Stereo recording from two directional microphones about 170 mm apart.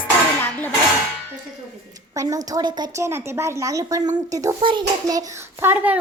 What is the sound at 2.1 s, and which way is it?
A woman's voice, 20° right (ahead or behind).